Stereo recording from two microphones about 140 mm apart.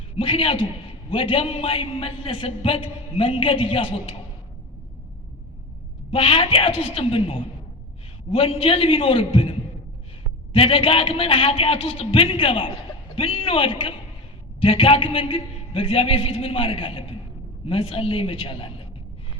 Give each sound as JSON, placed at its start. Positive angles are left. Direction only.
{"t": 0.2, "sound": "a man's voice", "side_deg": 40}
{"t": 6.1, "sound": "a man's voice", "side_deg": 40}